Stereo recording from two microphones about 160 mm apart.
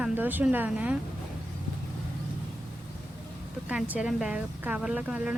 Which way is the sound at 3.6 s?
10° right (ahead or behind).